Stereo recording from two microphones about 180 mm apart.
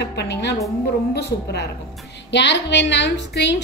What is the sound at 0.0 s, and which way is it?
Music, 70° left (ahead or behind).